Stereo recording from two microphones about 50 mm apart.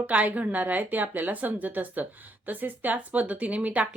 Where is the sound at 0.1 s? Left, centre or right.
Right.